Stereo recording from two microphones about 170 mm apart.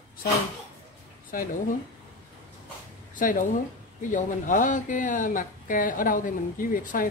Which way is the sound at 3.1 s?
50° left (ahead or behind).